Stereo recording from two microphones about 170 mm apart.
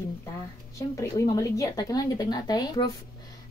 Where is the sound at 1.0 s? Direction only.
20° left (ahead or behind).